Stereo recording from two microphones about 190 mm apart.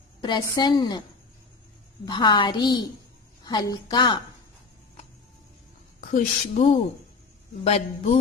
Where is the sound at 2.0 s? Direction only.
25° left (ahead or behind).